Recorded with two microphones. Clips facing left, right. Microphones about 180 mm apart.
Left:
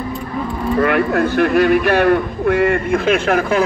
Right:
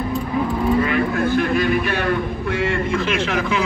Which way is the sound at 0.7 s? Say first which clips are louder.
Left 4 dB; 60° left (ahead or behind).